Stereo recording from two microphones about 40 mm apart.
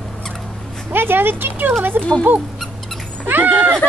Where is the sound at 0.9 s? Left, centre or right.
Right.